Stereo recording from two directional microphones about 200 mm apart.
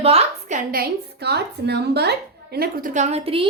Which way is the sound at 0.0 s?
35° right (ahead or behind).